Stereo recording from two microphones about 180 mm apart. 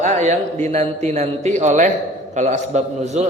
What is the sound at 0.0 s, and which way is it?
A man's voice, 40° right (ahead or behind).